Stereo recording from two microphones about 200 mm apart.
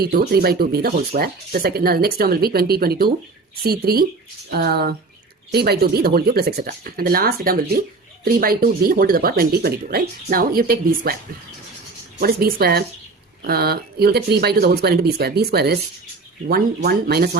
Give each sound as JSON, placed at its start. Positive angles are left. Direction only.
{"t": 0.0, "sound": "speech", "side_deg": -50}
{"t": 12.2, "sound": "speech", "side_deg": -50}